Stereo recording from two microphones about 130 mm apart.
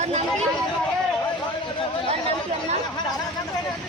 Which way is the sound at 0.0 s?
55° right (ahead or behind).